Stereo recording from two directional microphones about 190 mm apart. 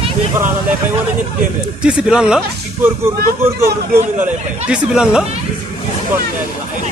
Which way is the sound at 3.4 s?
15° right (ahead or behind).